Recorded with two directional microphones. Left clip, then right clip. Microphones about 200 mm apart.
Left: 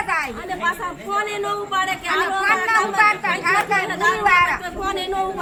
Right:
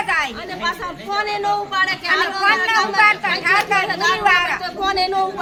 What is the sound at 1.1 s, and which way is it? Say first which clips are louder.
Speech: right 4 dB; 5° right (ahead or behind).